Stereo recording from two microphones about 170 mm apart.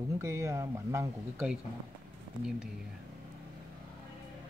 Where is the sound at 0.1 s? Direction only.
15° right (ahead or behind).